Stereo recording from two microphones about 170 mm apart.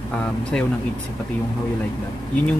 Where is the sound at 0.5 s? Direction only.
5° left (ahead or behind).